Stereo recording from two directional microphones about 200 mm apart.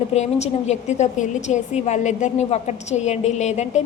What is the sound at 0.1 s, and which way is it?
A woman's voice, 35° left (ahead or behind).